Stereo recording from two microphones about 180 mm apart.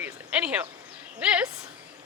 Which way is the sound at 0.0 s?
5° right (ahead or behind).